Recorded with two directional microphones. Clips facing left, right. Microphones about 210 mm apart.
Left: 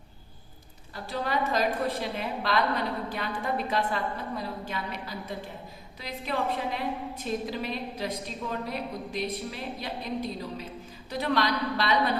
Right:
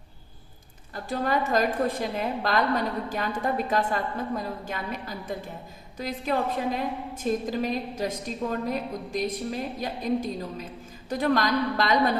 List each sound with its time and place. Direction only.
0.9 s a woman's voice: 50° right (ahead or behind)